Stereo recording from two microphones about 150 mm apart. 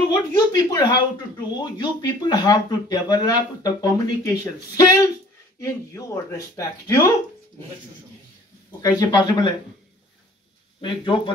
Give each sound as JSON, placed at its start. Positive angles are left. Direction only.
{"t": 0.1, "sound": "speech", "side_deg": 30}
{"t": 8.8, "sound": "speech", "side_deg": 30}
{"t": 10.8, "sound": "speech", "side_deg": 30}